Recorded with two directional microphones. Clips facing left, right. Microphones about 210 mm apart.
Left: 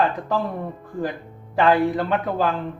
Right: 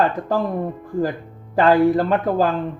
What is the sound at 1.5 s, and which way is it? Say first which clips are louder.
Speech: right 4 dB; 40° right (ahead or behind).